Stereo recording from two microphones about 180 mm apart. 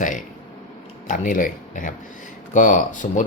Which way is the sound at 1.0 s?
45° left (ahead or behind).